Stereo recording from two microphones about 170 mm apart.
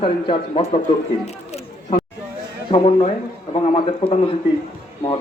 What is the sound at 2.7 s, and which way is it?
Speech, 30° left (ahead or behind).